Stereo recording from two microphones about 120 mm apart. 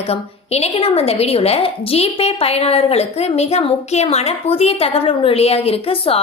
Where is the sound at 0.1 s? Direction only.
60° left (ahead or behind).